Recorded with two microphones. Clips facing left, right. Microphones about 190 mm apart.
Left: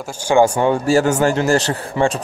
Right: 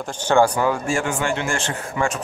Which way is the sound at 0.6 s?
30° left (ahead or behind).